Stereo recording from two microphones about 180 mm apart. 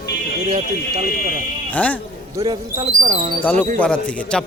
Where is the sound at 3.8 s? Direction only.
5° left (ahead or behind).